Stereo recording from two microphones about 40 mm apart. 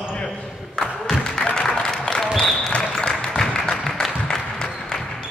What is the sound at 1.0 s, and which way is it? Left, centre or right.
Applause, centre.